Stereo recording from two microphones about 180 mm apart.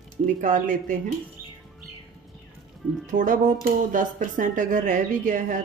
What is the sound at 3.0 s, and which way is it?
Speech, 45° right (ahead or behind).